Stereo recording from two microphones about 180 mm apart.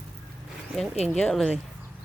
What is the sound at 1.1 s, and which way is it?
Speech, 5° left (ahead or behind).